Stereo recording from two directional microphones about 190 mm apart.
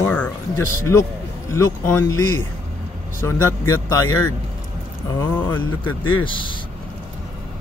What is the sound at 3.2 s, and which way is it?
Speech, 15° left (ahead or behind).